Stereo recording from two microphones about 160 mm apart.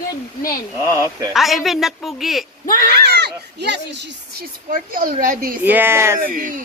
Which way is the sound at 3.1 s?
90° right.